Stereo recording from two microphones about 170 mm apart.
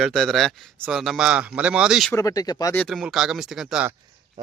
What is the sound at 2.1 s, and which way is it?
Speech, 20° left (ahead or behind).